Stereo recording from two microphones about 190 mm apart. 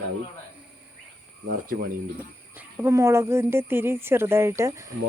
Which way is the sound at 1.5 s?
50° right (ahead or behind).